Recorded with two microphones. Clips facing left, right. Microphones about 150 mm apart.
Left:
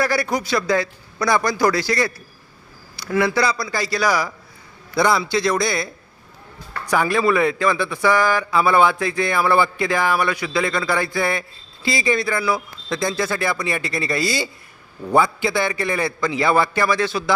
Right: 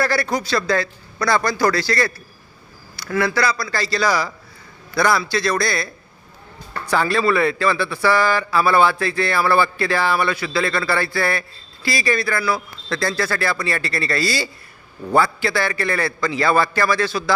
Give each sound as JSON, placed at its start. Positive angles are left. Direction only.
{"t": 0.0, "sound": "a man's voice", "side_deg": 15}